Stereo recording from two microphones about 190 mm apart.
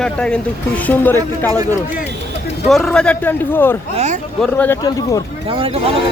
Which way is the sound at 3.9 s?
35° right (ahead or behind).